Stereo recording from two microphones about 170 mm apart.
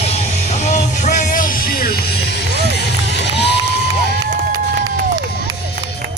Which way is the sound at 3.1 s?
90° left.